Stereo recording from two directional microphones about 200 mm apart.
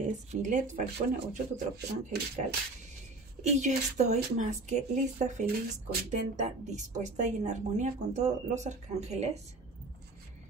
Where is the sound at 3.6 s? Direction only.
35° right (ahead or behind).